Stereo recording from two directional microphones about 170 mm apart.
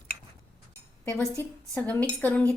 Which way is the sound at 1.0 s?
15° left (ahead or behind).